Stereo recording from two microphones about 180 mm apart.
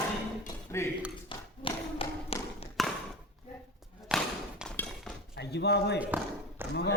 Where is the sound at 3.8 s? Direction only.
5° right (ahead or behind).